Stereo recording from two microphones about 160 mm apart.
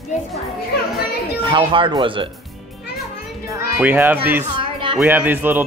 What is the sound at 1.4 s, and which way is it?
Speech, 30° right (ahead or behind).